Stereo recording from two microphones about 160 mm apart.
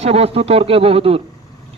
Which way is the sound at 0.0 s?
40° right (ahead or behind).